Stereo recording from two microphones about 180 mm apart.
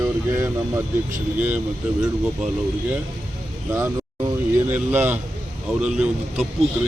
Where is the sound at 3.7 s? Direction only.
15° right (ahead or behind).